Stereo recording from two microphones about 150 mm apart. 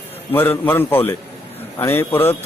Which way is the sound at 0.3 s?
15° left (ahead or behind).